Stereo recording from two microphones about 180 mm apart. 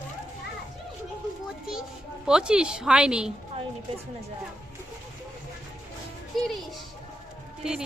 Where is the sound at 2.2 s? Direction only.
5° right (ahead or behind).